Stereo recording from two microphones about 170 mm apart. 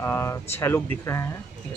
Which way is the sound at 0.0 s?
15° left (ahead or behind).